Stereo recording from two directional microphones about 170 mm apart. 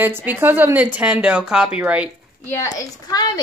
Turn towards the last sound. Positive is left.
turn(degrees=25)  # may be behind; listen again after turning